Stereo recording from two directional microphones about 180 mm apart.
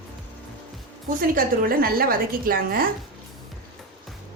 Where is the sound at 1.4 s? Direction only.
55° right (ahead or behind).